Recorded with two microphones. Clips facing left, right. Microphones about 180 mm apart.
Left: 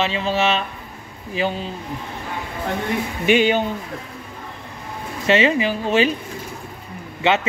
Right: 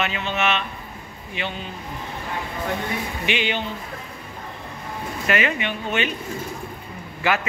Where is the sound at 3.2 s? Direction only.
45° left (ahead or behind).